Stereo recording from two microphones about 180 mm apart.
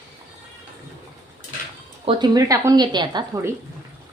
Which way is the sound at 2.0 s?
20° right (ahead or behind).